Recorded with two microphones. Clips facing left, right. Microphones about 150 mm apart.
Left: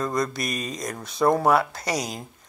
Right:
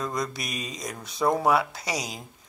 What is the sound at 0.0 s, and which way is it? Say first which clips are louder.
Speech: left 5 dB; 50° left (ahead or behind).